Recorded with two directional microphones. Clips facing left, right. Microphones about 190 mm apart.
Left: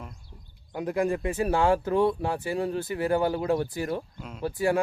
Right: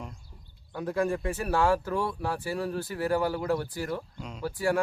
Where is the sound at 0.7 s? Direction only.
15° left (ahead or behind).